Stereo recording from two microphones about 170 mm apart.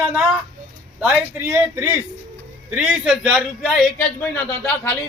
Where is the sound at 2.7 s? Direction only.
Centre (ahead or behind).